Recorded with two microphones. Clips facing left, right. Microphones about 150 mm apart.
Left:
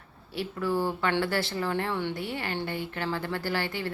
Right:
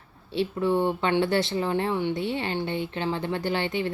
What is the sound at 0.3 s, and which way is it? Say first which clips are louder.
Speech: right 5 dB; 25° right (ahead or behind).